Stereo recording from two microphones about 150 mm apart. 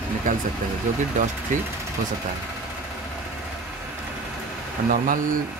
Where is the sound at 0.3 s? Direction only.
60° right (ahead or behind).